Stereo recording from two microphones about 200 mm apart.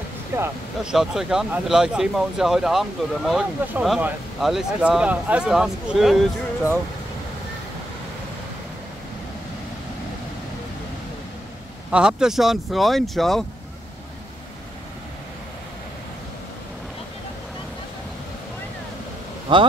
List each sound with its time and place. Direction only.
0.4 s speech: 5° right (ahead or behind)
11.9 s speech: 5° right (ahead or behind)
19.5 s speech: 25° right (ahead or behind)